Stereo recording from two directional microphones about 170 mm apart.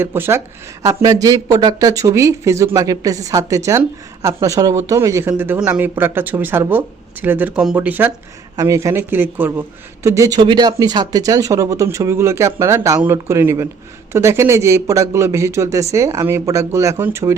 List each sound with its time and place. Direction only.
0.0 s speech: 15° right (ahead or behind)